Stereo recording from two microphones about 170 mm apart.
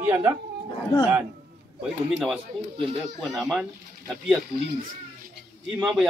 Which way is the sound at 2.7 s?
30° right (ahead or behind).